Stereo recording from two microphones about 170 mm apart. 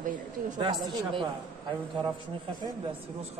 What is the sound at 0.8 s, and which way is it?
Speech, 30° right (ahead or behind).